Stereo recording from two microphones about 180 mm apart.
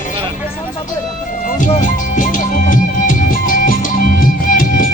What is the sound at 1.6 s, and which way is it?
Music, 45° left (ahead or behind).